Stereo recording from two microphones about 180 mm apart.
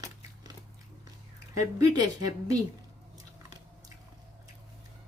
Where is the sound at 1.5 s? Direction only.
20° right (ahead or behind).